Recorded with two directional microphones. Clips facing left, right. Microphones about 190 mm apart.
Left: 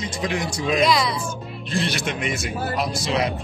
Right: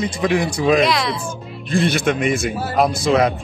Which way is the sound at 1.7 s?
55° right (ahead or behind).